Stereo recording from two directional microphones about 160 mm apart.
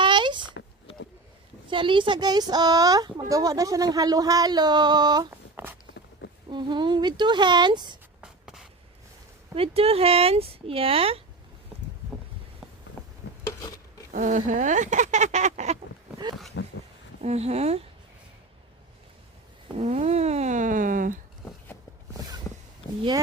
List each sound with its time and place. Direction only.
0.0 s a sound: 30° right (ahead or behind)
1.7 s speech: 30° right (ahead or behind)
5.6 s walk: 10° right (ahead or behind)
6.5 s speech: 30° right (ahead or behind)
8.2 s writing: 5° right (ahead or behind)
9.6 s speech: 40° right (ahead or behind)
14.1 s speech: 50° right (ahead or behind)
16.2 s a sound: 25° right (ahead or behind)
17.2 s speech: 45° right (ahead or behind)
19.7 s speech: 40° right (ahead or behind); by 21.2 s 55° right (ahead or behind)
22.5 s a sound: 20° left (ahead or behind)